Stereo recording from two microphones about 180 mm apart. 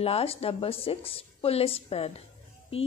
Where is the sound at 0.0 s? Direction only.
35° left (ahead or behind).